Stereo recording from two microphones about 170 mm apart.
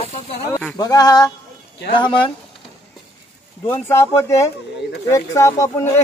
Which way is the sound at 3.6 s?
15° left (ahead or behind).